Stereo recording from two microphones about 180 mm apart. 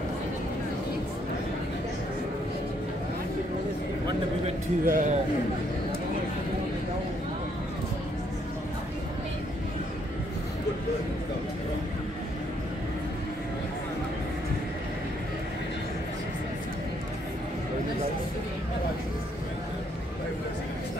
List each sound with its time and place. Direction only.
4.8 s speech: 50° right (ahead or behind)